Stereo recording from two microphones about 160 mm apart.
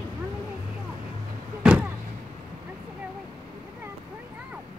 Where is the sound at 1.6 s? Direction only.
5° right (ahead or behind).